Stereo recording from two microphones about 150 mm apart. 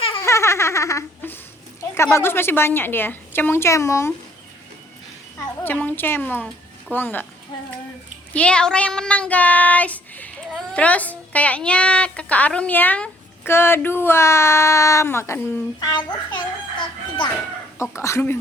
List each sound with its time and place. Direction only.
0.2 s a sound: 20° left (ahead or behind)
2.1 s child singing: 15° left (ahead or behind)
5.4 s child singing: 15° left (ahead or behind)
8.3 s child singing: 10° left (ahead or behind); by 16.4 s 30° left (ahead or behind)
17.7 s child singing: 20° left (ahead or behind)